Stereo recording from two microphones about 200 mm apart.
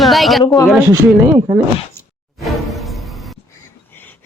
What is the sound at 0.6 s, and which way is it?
Speech, centre (ahead or behind).